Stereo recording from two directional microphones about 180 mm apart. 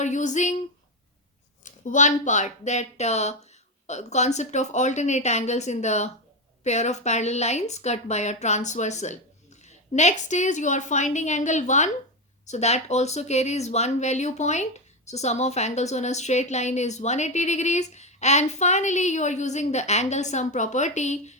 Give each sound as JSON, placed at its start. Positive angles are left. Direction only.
{"t": 0.0, "sound": "speech", "side_deg": 40}
{"t": 1.6, "sound": "speech", "side_deg": 45}